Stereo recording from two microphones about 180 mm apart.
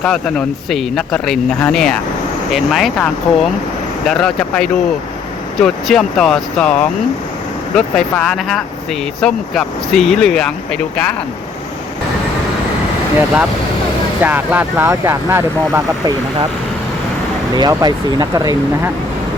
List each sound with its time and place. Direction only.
0.0 s speech: 5° left (ahead or behind)
7.8 s speech: 5° left (ahead or behind)
14.2 s speech: 10° right (ahead or behind)
17.5 s speech: 20° right (ahead or behind)